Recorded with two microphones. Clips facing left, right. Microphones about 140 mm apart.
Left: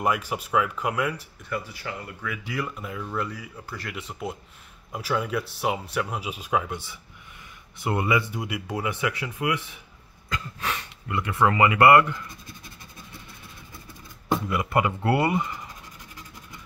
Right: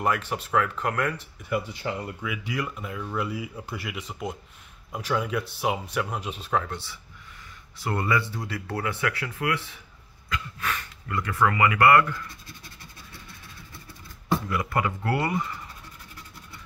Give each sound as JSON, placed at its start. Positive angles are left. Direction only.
{"t": 0.0, "sound": "speech", "side_deg": 10}
{"t": 1.5, "sound": "speech", "side_deg": -20}
{"t": 2.2, "sound": "speech", "side_deg": 0}
{"t": 3.9, "sound": "speech", "side_deg": 0}
{"t": 7.8, "sound": "speech", "side_deg": 15}
{"t": 14.3, "sound": "speech", "side_deg": 20}